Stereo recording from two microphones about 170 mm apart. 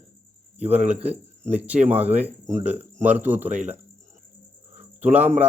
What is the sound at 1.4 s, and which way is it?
Speech, 10° right (ahead or behind).